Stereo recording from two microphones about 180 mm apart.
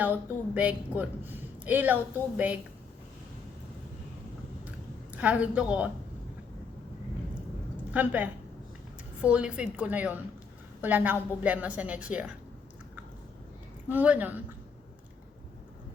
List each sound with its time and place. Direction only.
0.0 s a woman's voice: 10° right (ahead or behind)
5.1 s a woman's voice: 5° right (ahead or behind)
7.9 s a woman's voice: 10° right (ahead or behind)
13.9 s a woman's voice: 10° right (ahead or behind)